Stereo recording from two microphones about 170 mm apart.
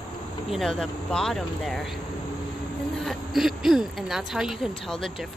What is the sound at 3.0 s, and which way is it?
Speech, centre (ahead or behind).